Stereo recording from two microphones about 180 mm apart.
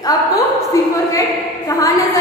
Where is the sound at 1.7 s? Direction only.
20° left (ahead or behind).